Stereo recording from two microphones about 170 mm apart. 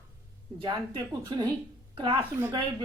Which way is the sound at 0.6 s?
30° right (ahead or behind).